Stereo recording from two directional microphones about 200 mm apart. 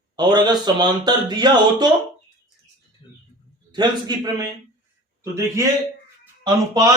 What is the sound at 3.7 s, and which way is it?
A man's voice, 20° right (ahead or behind).